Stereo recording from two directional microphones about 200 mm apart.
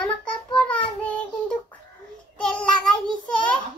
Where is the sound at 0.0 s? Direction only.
5° left (ahead or behind).